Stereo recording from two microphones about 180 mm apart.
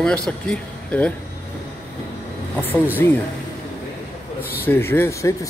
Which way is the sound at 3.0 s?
15° left (ahead or behind).